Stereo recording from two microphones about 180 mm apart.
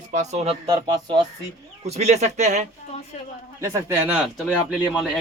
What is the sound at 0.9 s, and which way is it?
Speech, 25° right (ahead or behind).